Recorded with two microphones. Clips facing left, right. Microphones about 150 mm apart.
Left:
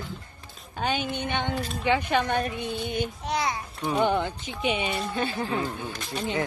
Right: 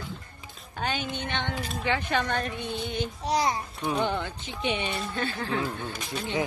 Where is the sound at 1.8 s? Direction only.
15° left (ahead or behind).